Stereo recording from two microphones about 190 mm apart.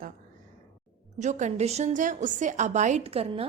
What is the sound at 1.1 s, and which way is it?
A woman's voice, 40° right (ahead or behind).